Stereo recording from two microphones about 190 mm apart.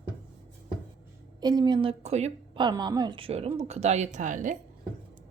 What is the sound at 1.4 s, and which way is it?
A woman's voice, 20° right (ahead or behind).